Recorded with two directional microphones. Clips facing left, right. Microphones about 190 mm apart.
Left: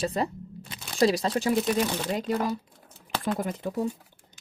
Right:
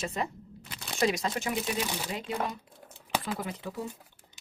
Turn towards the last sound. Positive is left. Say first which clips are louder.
# left 6 dB
turn(degrees=45)  # may be behind; listen again after turning